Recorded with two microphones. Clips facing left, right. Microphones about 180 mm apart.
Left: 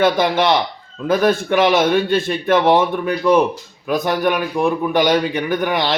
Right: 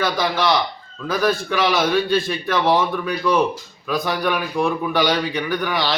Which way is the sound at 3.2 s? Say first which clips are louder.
Left 5 dB; 20° left (ahead or behind).